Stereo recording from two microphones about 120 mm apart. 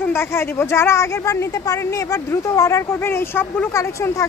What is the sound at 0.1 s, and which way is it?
A child's voice, 20° left (ahead or behind).